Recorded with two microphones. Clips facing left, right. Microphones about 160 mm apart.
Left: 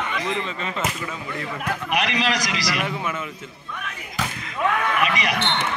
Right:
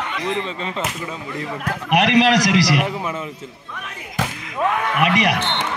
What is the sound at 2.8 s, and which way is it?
Speech, 35° right (ahead or behind).